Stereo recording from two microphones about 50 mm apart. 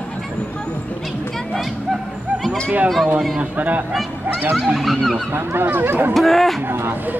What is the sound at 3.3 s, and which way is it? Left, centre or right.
Speech, right.